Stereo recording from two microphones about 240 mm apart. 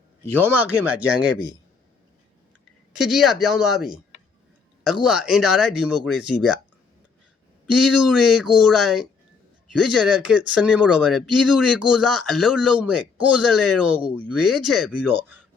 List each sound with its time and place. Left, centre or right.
0.4 s speech: centre
2.9 s speech: centre
7.7 s speech: centre